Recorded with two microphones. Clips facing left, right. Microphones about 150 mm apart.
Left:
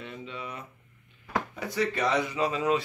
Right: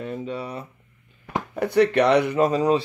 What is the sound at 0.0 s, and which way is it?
Speech, 45° right (ahead or behind).